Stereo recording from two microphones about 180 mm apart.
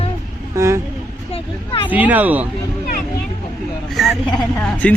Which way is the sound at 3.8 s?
Centre (ahead or behind).